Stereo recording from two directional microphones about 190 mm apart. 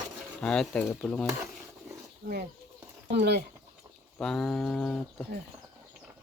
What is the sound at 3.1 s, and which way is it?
Speech, 60° right (ahead or behind).